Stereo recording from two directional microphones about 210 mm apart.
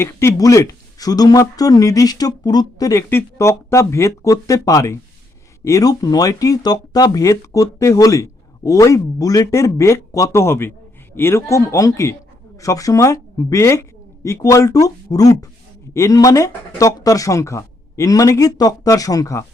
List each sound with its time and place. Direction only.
0.0 s speech: 10° left (ahead or behind)